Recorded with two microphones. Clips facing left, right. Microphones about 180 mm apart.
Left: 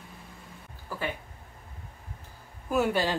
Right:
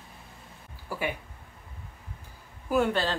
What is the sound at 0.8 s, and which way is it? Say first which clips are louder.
Speech: right 2 dB; 10° right (ahead or behind).